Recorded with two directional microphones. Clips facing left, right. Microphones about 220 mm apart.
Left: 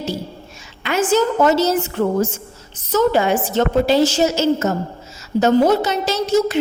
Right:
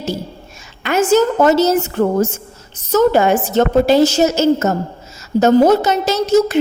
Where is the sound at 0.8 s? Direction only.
45° right (ahead or behind).